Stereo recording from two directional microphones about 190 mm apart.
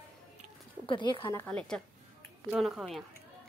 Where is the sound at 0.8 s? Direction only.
25° left (ahead or behind).